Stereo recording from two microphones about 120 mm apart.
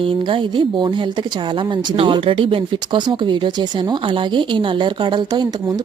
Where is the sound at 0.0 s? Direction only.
45° right (ahead or behind).